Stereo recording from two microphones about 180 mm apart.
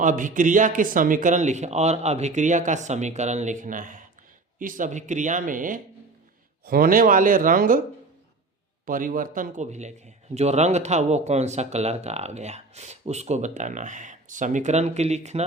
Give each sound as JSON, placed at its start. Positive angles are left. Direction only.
{"t": 0.0, "sound": "speech", "side_deg": -45}
{"t": 8.9, "sound": "speech", "side_deg": -50}